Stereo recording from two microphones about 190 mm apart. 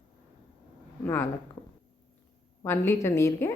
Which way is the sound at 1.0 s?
15° left (ahead or behind).